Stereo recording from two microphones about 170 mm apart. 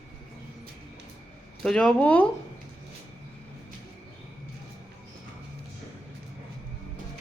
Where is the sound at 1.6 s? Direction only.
5° left (ahead or behind).